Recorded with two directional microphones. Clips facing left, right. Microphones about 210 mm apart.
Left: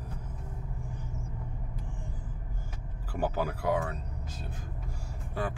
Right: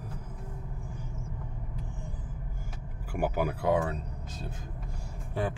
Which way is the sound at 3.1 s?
10° right (ahead or behind).